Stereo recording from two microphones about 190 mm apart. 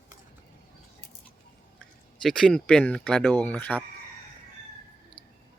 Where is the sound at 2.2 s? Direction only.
Centre (ahead or behind).